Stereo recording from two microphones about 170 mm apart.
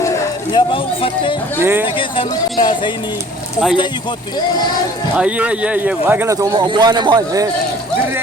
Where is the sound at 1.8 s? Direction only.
30° left (ahead or behind).